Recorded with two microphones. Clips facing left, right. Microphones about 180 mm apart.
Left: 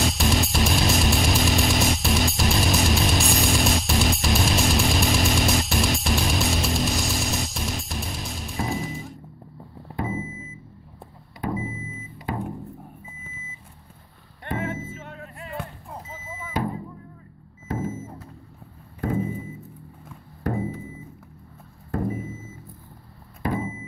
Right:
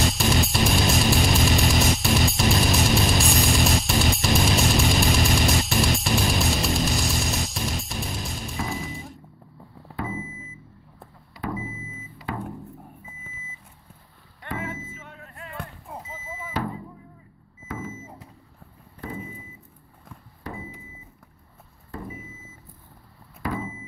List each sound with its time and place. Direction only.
0.0 s music: centre (ahead or behind)
9.9 s a sound: 20° left (ahead or behind)
11.5 s music: 20° left (ahead or behind)
17.6 s vehicle: 40° left (ahead or behind)
18.9 s vehicle: 50° left (ahead or behind)
20.4 s microwave oven: 50° left (ahead or behind)
21.9 s vehicle: 45° left (ahead or behind)
23.5 s a sound: 20° left (ahead or behind)